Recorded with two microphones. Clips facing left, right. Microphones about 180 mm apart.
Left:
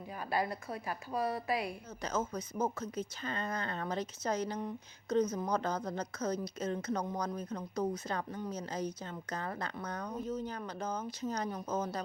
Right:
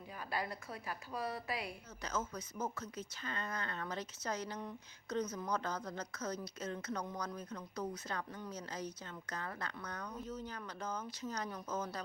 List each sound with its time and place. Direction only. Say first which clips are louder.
0.3 s a woman's voice: left 7 dB; 40° left (ahead or behind)
2.0 s a woman's voice: left 5 dB; 30° left (ahead or behind)
7.0 s speech: left 6 dB; 40° left (ahead or behind)
7.3 s a woman's voice: left 7 dB; 25° left (ahead or behind)